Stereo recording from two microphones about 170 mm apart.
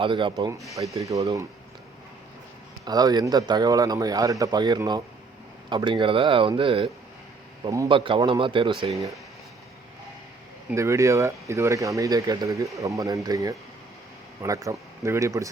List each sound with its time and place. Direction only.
0.0 s a man's voice: 30° right (ahead or behind)
2.8 s a man's voice: 25° right (ahead or behind)
10.7 s a man's voice: 15° right (ahead or behind)